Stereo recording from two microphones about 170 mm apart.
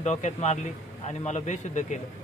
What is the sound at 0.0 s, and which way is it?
A man's voice, 40° left (ahead or behind).